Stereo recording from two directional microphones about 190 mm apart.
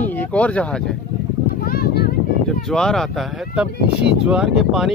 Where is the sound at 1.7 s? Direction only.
50° left (ahead or behind).